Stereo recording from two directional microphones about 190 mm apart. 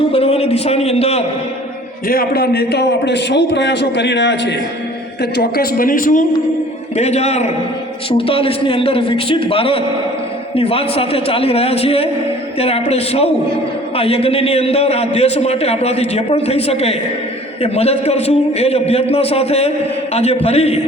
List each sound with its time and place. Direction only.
0.1 s a man's voice: 30° left (ahead or behind)
2.0 s a man's voice: 55° left (ahead or behind)
5.2 s speech: 55° left (ahead or behind)
6.9 s a man's voice: 35° left (ahead or behind)